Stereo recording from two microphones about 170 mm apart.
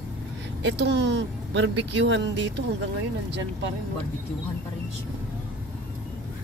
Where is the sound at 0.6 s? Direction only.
90° right.